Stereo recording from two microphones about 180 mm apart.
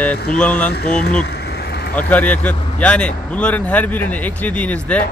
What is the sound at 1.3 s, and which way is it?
Vehicle, 65° left (ahead or behind).